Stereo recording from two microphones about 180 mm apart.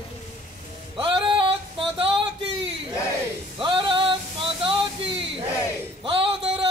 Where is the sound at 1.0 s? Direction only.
25° right (ahead or behind).